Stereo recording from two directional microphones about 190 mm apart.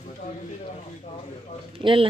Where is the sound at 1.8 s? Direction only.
25° right (ahead or behind).